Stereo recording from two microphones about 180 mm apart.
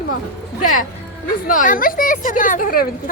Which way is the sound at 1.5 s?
50° left (ahead or behind).